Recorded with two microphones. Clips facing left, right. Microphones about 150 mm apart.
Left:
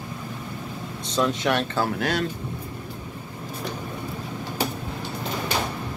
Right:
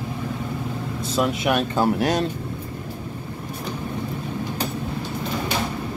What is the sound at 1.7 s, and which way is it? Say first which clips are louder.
Speech: right 5 dB; 20° right (ahead or behind).